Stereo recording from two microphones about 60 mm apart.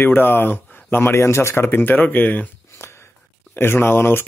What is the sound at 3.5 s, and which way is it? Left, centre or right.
Speech, left.